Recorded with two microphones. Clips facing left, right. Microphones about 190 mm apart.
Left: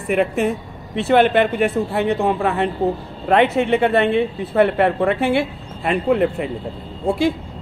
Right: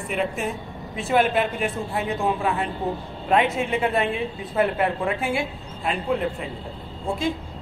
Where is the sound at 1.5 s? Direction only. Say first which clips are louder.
Left 8 dB; 65° left (ahead or behind).